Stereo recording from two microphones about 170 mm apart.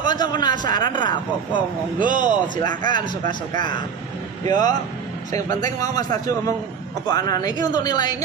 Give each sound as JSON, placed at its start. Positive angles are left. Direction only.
{"t": 0.0, "sound": "a man's voice", "side_deg": 25}
{"t": 2.0, "sound": "a man's voice", "side_deg": -50}
{"t": 2.9, "sound": "a man's voice", "side_deg": 25}
{"t": 5.9, "sound": "a man's voice", "side_deg": 20}